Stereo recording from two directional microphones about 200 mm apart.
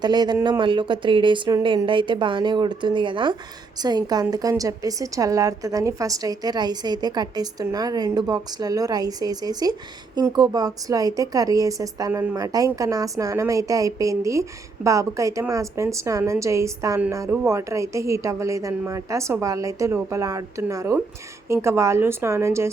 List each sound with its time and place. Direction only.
0.0 s a woman's voice: 20° right (ahead or behind)